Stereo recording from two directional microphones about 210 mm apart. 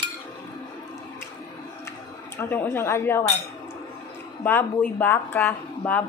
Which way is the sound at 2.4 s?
10° left (ahead or behind).